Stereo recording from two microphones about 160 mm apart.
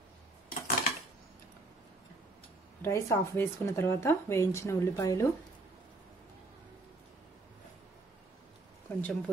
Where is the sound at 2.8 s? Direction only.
15° left (ahead or behind).